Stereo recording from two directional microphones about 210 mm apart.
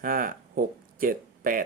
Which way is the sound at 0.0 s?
40° right (ahead or behind).